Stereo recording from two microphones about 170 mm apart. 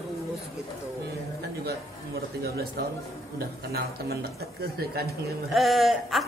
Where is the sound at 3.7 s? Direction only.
65° right (ahead or behind).